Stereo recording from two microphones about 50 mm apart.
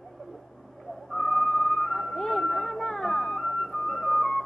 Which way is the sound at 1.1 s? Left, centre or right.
Centre.